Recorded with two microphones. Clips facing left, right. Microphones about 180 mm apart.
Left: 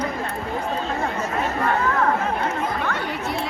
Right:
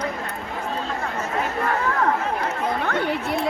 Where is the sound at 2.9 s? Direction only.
40° right (ahead or behind).